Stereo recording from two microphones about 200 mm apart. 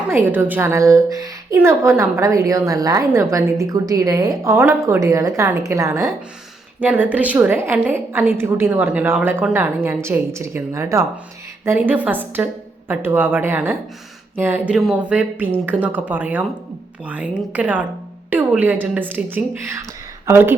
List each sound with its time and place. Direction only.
0.1 s a woman's voice: 10° right (ahead or behind)